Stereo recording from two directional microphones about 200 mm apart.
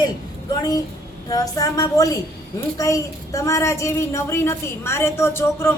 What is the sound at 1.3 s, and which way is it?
A woman's voice, 20° left (ahead or behind).